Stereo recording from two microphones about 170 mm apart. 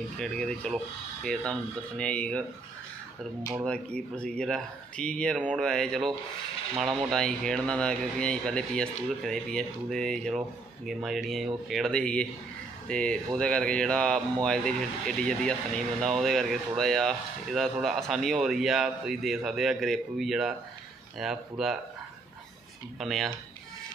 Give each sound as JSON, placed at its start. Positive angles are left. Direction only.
{"t": 0.2, "sound": "speech", "side_deg": 5}
{"t": 3.6, "sound": "speech", "side_deg": 5}
{"t": 22.9, "sound": "speech", "side_deg": 0}